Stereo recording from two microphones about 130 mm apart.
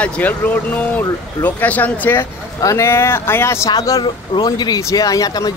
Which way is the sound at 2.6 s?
25° left (ahead or behind).